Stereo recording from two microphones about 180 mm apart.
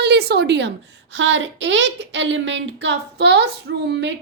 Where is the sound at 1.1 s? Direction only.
90° right.